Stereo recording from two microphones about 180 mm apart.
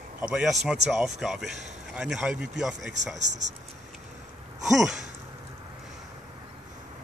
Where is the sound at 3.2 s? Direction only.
40° right (ahead or behind).